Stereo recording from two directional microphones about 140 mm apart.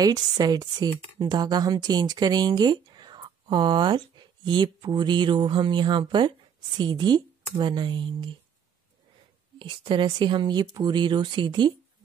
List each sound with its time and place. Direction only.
0.0 s speech: 25° right (ahead or behind)
9.6 s speech: 35° right (ahead or behind)